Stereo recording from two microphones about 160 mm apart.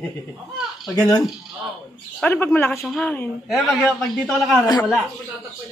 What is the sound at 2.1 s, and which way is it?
A man's voice, 10° left (ahead or behind).